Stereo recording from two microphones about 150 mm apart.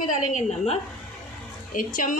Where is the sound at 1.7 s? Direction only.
60° left (ahead or behind).